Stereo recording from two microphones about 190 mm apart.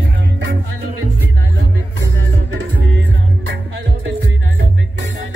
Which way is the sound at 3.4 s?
70° right (ahead or behind).